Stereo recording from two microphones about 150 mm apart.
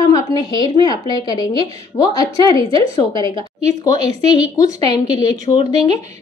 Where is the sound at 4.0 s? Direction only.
45° right (ahead or behind).